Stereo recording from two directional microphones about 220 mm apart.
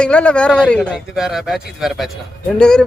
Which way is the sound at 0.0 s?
5° left (ahead or behind).